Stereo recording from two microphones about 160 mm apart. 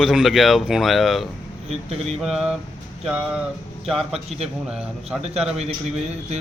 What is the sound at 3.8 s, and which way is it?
Speech, centre (ahead or behind).